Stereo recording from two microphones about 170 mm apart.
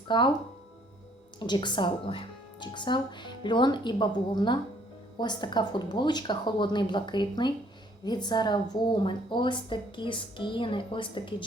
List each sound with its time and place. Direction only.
0.1 s speech: 25° left (ahead or behind)
1.4 s speech: 25° left (ahead or behind)